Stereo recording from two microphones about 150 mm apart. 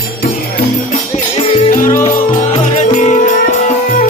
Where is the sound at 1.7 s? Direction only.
60° left (ahead or behind).